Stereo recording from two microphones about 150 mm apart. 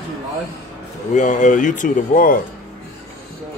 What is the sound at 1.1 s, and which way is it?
A man's voice, 55° left (ahead or behind).